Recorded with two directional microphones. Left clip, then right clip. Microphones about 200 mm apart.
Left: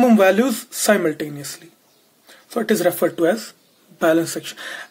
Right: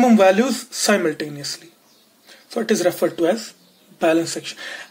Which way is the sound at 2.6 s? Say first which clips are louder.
Left 1 dB; 30° left (ahead or behind).